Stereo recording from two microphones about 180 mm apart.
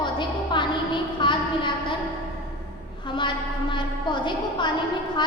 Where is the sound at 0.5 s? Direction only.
25° left (ahead or behind).